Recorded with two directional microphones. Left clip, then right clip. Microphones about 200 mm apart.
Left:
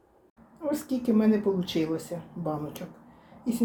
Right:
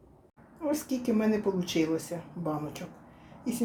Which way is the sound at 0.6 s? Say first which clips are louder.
Left 1 dB; centre (ahead or behind).